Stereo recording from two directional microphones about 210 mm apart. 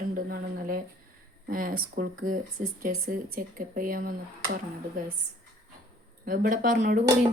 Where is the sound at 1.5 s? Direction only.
40° right (ahead or behind).